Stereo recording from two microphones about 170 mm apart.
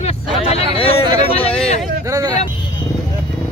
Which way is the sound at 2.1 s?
20° right (ahead or behind).